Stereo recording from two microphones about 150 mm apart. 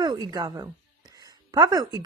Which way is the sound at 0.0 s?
25° right (ahead or behind).